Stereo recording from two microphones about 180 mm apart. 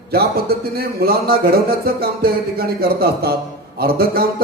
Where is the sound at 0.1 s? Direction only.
60° right (ahead or behind).